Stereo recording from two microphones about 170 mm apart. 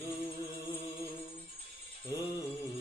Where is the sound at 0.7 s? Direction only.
10° left (ahead or behind).